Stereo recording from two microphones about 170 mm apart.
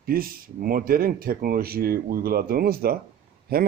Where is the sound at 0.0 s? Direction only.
60° right (ahead or behind).